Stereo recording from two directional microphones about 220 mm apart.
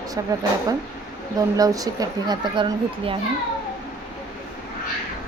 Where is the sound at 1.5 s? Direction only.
15° right (ahead or behind).